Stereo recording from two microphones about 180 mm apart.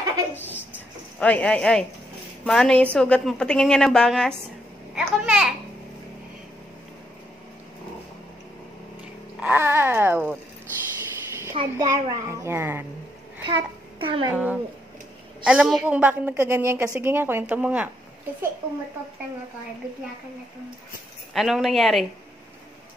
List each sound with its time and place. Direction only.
0.4 s a woman's voice: 10° left (ahead or behind)
9.4 s a woman's voice: 10° right (ahead or behind)
11.5 s a woman's voice: 20° right (ahead or behind)
13.5 s a child's voice: 30° right (ahead or behind)
14.3 s a woman's voice: 10° right (ahead or behind)
21.3 s a woman's voice: centre (ahead or behind)